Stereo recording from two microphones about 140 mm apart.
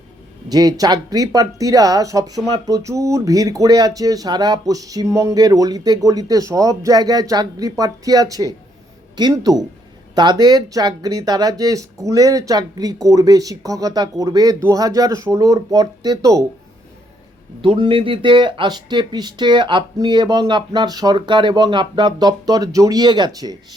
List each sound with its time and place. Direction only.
0.4 s speech: 30° right (ahead or behind)
17.6 s speech: 40° right (ahead or behind)